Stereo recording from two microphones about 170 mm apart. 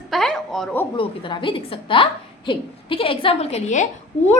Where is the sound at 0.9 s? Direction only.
30° left (ahead or behind).